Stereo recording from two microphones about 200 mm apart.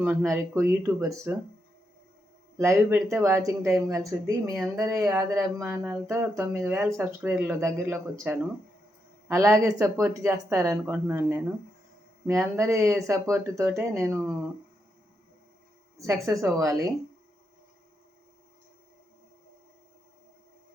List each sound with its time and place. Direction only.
0.0 s speech: 10° right (ahead or behind)
2.6 s speech: 15° right (ahead or behind)
16.2 s speech: 15° right (ahead or behind)